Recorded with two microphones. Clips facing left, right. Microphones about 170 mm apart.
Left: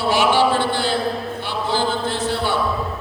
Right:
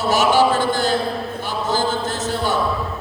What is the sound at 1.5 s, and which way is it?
Chant, 45° right (ahead or behind).